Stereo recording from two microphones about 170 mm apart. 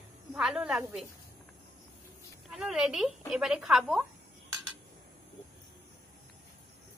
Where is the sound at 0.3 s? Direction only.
Centre (ahead or behind).